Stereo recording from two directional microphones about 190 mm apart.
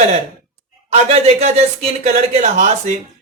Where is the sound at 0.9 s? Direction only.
35° right (ahead or behind).